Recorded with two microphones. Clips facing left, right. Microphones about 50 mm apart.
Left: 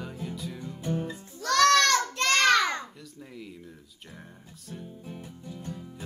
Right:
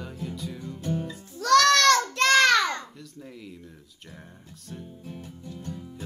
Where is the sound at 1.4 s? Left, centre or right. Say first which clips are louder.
Right 3 dB; right.